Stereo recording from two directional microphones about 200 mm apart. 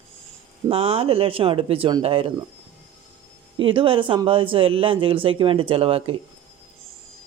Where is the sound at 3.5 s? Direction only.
25° right (ahead or behind).